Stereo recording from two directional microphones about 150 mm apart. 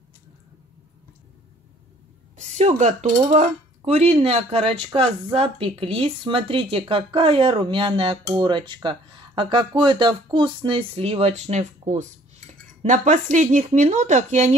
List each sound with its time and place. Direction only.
2.3 s speech: 50° right (ahead or behind)